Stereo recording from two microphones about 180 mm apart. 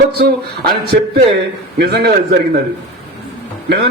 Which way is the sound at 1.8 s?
60° right (ahead or behind).